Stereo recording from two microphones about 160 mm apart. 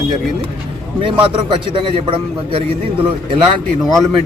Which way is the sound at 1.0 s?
35° right (ahead or behind).